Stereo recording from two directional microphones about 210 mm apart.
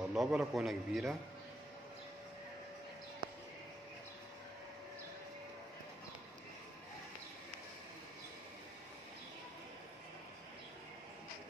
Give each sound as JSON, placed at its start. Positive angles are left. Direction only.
{"t": 0.1, "sound": "a man's voice", "side_deg": -5}